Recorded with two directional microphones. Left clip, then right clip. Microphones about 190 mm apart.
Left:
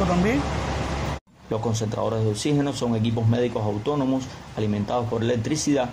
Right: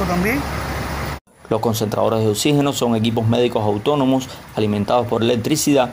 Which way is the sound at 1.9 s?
50° right (ahead or behind).